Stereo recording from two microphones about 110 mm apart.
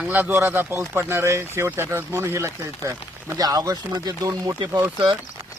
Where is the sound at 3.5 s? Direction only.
35° right (ahead or behind).